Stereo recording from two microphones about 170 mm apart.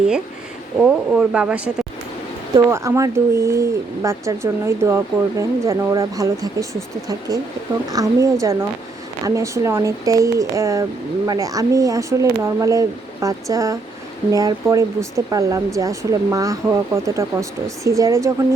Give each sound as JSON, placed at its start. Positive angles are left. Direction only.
{"t": 0.8, "sound": "speech", "side_deg": -5}
{"t": 7.9, "sound": "speech", "side_deg": -20}